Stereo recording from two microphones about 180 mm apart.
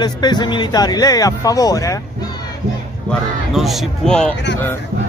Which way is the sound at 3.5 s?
Centre (ahead or behind).